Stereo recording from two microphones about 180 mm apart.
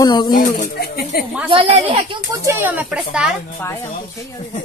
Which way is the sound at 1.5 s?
30° right (ahead or behind).